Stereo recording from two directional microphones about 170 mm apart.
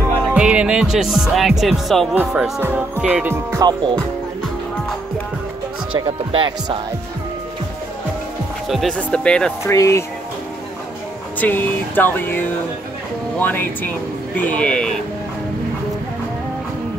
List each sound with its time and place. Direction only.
0.3 s speech: 5° right (ahead or behind)
2.6 s music: 10° right (ahead or behind)
5.9 s speech: 30° right (ahead or behind)
8.6 s speech: centre (ahead or behind)
9.7 s speech: 15° left (ahead or behind)
11.3 s speech: 10° left (ahead or behind)